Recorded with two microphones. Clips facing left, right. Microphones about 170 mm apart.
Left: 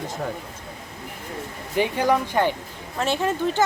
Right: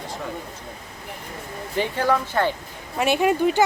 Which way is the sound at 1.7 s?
15° left (ahead or behind).